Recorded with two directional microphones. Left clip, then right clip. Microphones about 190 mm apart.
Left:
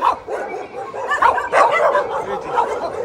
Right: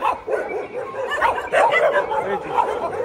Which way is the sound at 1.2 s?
45° left (ahead or behind).